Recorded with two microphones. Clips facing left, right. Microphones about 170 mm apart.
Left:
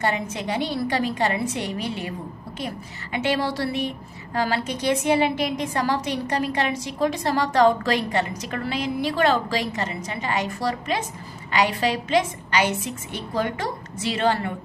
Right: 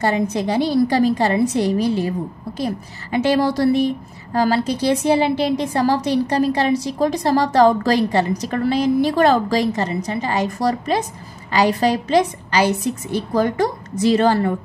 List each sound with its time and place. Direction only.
0.0 s a woman's voice: 35° right (ahead or behind)